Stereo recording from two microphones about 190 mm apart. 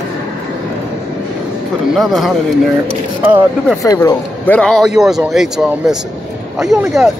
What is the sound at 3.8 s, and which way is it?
Speech, 15° left (ahead or behind).